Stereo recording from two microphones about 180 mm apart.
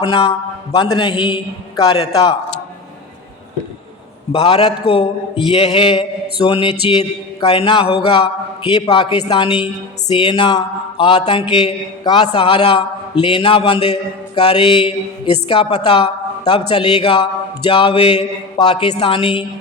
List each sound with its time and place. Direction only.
0.0 s mantra: 30° left (ahead or behind)
4.3 s a man's voice: 35° left (ahead or behind)
6.5 s mantra: 30° left (ahead or behind)